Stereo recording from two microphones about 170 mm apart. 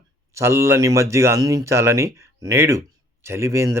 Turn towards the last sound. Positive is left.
turn(degrees=-15)  # may be behind; listen again after turning